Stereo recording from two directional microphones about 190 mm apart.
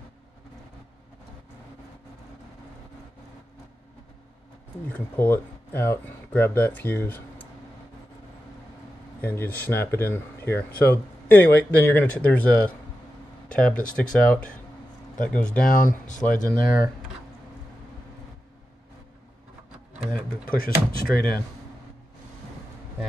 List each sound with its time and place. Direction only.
4.8 s speech: 10° left (ahead or behind)
9.2 s speech: 10° left (ahead or behind)
15.6 s speech: 45° left (ahead or behind)
20.4 s speech: 50° left (ahead or behind)